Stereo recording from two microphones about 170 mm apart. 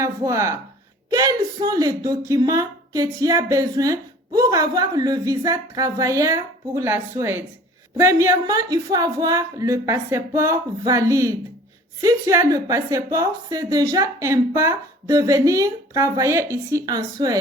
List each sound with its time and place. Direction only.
0.0 s speech: 15° right (ahead or behind)